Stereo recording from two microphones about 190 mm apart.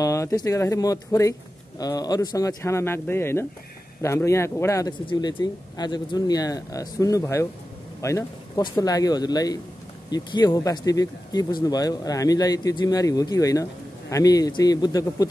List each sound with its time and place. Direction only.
0.0 s speech: 15° left (ahead or behind)